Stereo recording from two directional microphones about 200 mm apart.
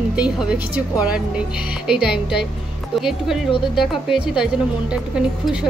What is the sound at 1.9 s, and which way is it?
Speech, 5° right (ahead or behind).